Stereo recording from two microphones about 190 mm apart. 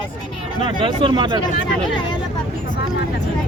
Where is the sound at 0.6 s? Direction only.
25° right (ahead or behind).